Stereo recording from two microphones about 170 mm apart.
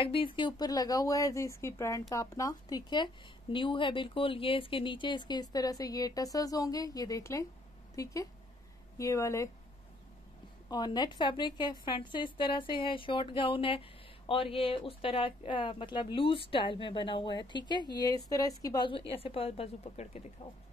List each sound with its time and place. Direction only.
0.0 s a woman's voice: 30° left (ahead or behind)
10.7 s a woman's voice: 25° left (ahead or behind)
19.1 s speech: 35° left (ahead or behind)